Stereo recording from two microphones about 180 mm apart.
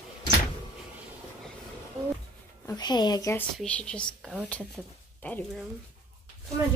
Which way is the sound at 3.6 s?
5° left (ahead or behind).